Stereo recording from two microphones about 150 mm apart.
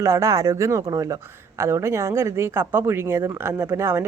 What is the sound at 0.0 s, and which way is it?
A woman's voice, 20° right (ahead or behind).